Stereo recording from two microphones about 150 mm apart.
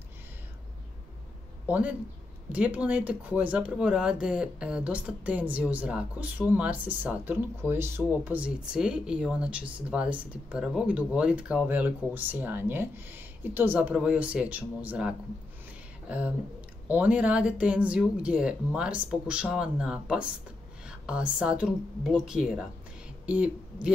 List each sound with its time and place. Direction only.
1.7 s speech: 10° right (ahead or behind)